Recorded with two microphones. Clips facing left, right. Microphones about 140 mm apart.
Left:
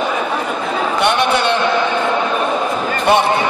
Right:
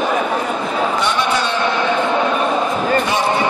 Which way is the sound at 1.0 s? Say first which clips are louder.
Left 3 dB; 60° left (ahead or behind).